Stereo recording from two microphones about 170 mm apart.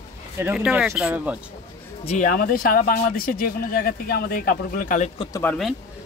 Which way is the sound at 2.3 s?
55° left (ahead or behind).